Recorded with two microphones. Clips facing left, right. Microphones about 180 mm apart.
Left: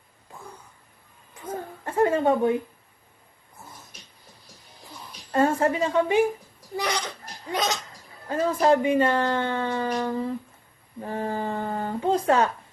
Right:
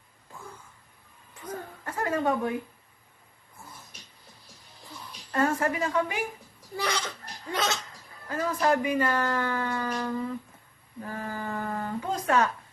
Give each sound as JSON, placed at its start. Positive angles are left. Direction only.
{"t": 1.3, "sound": "a sound", "side_deg": 20}
{"t": 5.3, "sound": "speech", "side_deg": 25}
{"t": 6.7, "sound": "speech", "side_deg": 15}
{"t": 8.3, "sound": "speech", "side_deg": 25}